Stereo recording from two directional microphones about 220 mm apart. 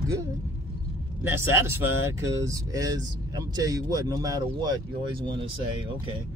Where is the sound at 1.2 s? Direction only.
10° right (ahead or behind).